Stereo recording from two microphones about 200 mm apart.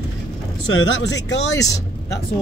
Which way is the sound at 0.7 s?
60° left (ahead or behind).